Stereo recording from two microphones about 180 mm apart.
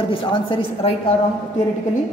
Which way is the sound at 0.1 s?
30° left (ahead or behind).